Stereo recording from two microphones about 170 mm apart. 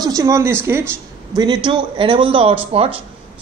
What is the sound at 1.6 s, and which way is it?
Speech, 30° right (ahead or behind).